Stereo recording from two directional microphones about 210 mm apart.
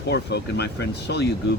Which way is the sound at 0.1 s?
50° left (ahead or behind).